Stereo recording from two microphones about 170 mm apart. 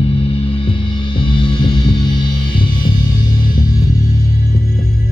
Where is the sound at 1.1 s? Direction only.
30° left (ahead or behind).